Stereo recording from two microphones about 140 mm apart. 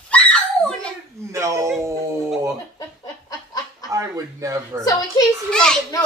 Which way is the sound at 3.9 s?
25° right (ahead or behind).